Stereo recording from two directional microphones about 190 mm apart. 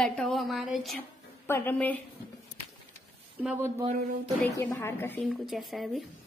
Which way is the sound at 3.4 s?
10° right (ahead or behind).